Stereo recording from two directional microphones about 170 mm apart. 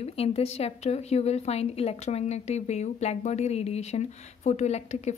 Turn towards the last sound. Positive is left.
turn(degrees=40)  # may be behind; listen again after turning